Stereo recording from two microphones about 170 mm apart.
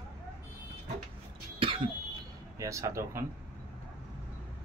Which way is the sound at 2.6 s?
20° right (ahead or behind).